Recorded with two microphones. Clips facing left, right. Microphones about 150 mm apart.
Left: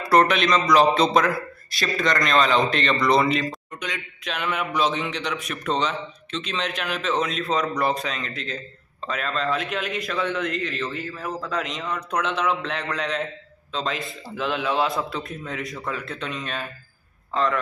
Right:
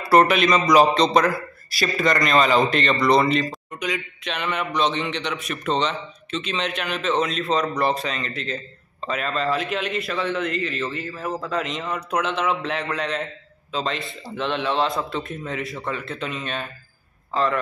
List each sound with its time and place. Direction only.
0.1 s a man's voice: 5° right (ahead or behind)
0.9 s a man's voice: 5° left (ahead or behind)